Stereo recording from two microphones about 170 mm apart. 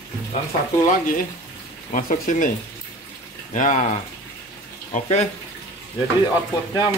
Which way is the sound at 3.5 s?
45° left (ahead or behind).